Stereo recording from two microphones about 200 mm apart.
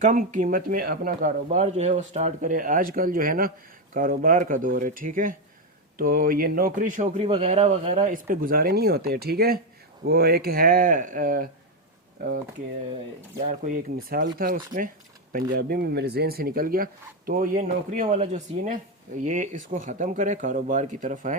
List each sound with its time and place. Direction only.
0.0 s speech: 40° right (ahead or behind)
8.3 s speech: 45° right (ahead or behind)
13.4 s speech: 40° right (ahead or behind)
18.0 s speech: 35° right (ahead or behind)